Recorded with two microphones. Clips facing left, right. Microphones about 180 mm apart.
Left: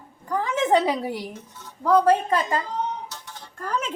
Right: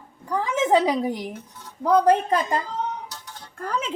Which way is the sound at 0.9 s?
5° left (ahead or behind).